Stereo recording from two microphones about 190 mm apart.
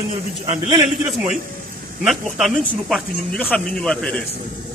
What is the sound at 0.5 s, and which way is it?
Speech, 25° right (ahead or behind).